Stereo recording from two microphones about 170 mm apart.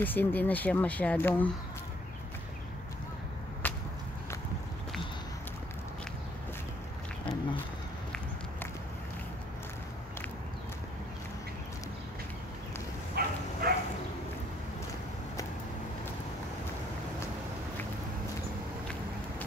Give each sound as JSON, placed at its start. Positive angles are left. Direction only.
{"t": 0.0, "sound": "speech", "side_deg": 10}
{"t": 3.6, "sound": "whip", "side_deg": 10}
{"t": 13.2, "sound": "bow-wow", "side_deg": -70}